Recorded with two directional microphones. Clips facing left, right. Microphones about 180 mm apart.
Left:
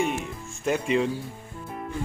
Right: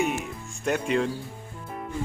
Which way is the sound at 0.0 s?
5° right (ahead or behind).